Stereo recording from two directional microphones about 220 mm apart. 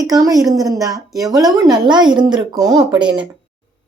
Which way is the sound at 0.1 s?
15° right (ahead or behind).